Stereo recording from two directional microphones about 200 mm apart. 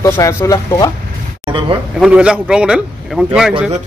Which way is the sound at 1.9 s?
5° right (ahead or behind).